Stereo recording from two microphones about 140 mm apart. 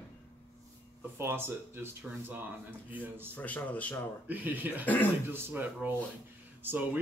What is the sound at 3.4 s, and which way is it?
Speech, 10° left (ahead or behind).